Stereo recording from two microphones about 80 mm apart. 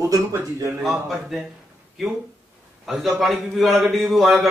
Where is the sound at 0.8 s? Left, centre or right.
Centre.